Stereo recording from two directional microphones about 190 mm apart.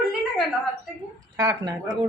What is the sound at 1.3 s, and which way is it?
Speech, 20° right (ahead or behind).